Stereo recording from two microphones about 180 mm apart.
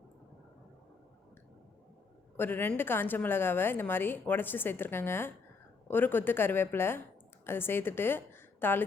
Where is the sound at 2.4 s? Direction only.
10° left (ahead or behind).